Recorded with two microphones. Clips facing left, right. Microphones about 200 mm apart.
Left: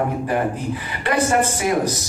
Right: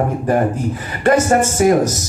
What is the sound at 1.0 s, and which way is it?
Speech, 45° right (ahead or behind).